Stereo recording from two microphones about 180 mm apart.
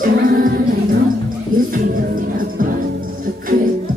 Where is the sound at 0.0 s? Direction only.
50° right (ahead or behind).